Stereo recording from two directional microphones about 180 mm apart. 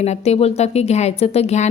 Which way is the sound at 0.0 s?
35° left (ahead or behind).